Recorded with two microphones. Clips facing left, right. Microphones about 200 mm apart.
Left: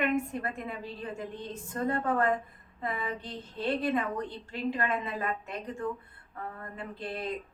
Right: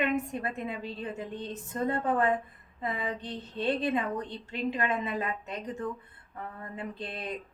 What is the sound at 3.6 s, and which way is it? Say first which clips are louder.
Speech: right 1 dB; 20° right (ahead or behind).